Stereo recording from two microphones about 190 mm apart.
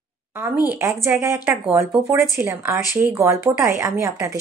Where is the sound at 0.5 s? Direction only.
20° left (ahead or behind).